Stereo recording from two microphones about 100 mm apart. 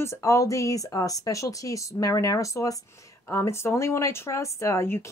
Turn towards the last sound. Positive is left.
turn(degrees=30)  # may be behind; listen again after turning